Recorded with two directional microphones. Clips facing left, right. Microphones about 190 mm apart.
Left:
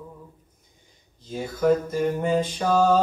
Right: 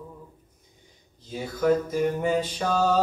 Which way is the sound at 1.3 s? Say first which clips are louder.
Left 2 dB; centre (ahead or behind).